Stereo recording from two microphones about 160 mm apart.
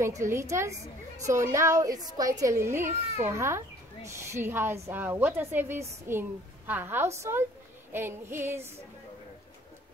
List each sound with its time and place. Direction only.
0.0 s a child's voice: 15° right (ahead or behind)